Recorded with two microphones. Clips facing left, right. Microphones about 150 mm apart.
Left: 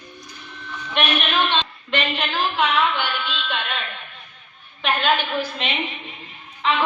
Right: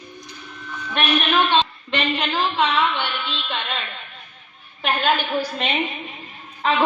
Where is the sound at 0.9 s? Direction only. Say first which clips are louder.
Right 2 dB; 40° right (ahead or behind).